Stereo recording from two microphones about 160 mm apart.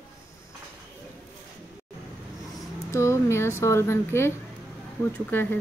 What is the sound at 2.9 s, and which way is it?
A woman's voice, 20° left (ahead or behind).